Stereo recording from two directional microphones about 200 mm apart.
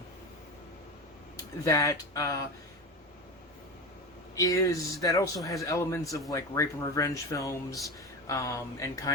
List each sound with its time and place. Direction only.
1.6 s speech: 15° left (ahead or behind)
4.4 s speech: 15° left (ahead or behind)